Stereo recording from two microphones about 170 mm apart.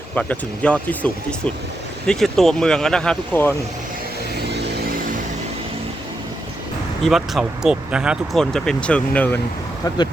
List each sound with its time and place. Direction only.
0.2 s speech: 5° left (ahead or behind)
4.4 s vehicle: 80° right
7.0 s speech: centre (ahead or behind)